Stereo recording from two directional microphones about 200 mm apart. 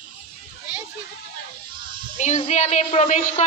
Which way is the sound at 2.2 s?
40° left (ahead or behind).